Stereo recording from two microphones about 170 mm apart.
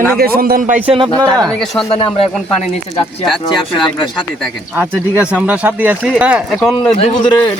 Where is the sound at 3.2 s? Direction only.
Centre (ahead or behind).